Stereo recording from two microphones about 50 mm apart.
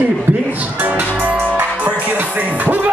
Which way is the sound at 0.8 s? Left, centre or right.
Right.